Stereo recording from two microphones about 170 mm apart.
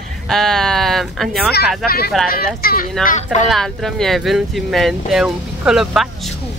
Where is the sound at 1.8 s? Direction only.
65° left (ahead or behind).